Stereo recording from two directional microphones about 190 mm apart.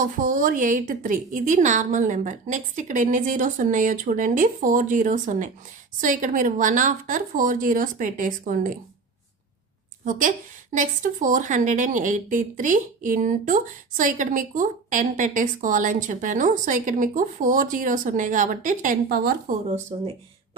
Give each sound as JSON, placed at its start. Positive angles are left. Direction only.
{"t": 0.0, "sound": "a woman's voice", "side_deg": -45}
{"t": 10.0, "sound": "a woman's voice", "side_deg": -45}
{"t": 19.9, "sound": "speech", "side_deg": -30}